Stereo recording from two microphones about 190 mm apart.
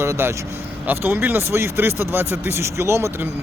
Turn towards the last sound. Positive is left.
turn(degrees=-15)  # may be behind; listen again after turning